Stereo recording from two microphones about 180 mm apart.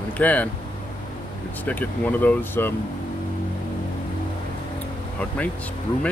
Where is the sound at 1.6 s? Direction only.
10° left (ahead or behind).